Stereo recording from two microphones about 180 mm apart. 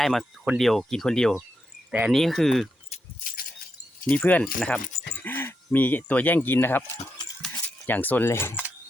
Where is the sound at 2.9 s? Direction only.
35° left (ahead or behind).